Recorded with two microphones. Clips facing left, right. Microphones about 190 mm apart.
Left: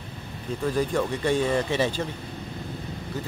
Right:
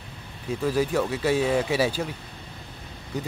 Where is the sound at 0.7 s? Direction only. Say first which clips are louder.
Right 1 dB; 5° right (ahead or behind).